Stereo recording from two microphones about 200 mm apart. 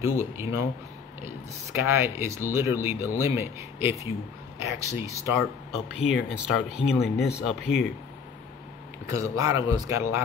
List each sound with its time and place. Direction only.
0.0 s speech: 10° right (ahead or behind)
7.2 s speech: 55° left (ahead or behind)
7.4 s speech: centre (ahead or behind)
9.1 s speech: 15° right (ahead or behind)